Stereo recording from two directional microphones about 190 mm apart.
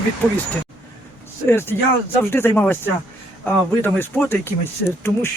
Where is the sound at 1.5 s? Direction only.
10° left (ahead or behind).